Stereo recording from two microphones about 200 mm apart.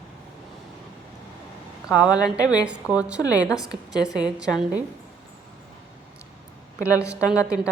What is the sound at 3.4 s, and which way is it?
Speech, 15° left (ahead or behind).